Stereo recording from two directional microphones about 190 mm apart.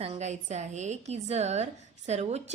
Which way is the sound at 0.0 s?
35° right (ahead or behind).